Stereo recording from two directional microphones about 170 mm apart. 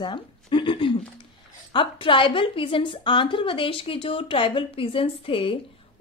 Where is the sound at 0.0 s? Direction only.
30° left (ahead or behind).